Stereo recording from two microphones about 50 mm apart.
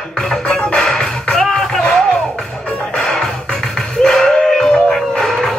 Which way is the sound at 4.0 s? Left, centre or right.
Centre.